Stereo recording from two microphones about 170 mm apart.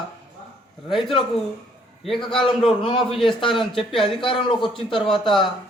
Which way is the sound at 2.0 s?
Centre (ahead or behind).